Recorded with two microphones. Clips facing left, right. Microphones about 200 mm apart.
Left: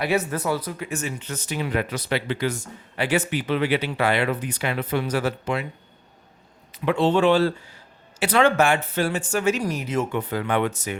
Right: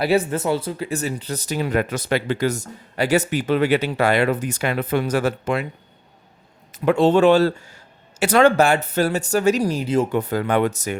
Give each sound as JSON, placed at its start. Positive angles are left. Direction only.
{"t": 0.0, "sound": "speech", "side_deg": -30}
{"t": 6.7, "sound": "speech", "side_deg": -45}